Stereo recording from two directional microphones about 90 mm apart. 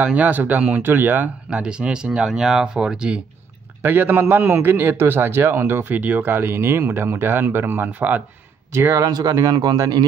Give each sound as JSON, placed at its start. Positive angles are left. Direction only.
{"t": 0.0, "sound": "speech", "side_deg": -20}
{"t": 3.8, "sound": "a man's voice", "side_deg": -20}
{"t": 8.7, "sound": "a man's voice", "side_deg": -30}